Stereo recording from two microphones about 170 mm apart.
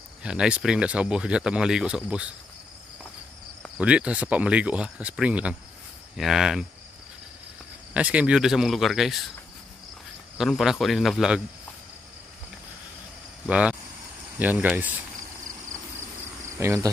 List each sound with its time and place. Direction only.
0.2 s speech: 5° right (ahead or behind)
3.7 s speech: 5° right (ahead or behind)
7.9 s speech: 5° right (ahead or behind)
10.3 s speech: centre (ahead or behind)
13.5 s speech: 5° right (ahead or behind)
16.5 s speech: 15° right (ahead or behind)